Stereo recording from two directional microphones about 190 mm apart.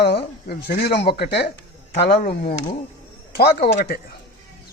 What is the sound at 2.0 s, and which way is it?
Speech, 50° left (ahead or behind).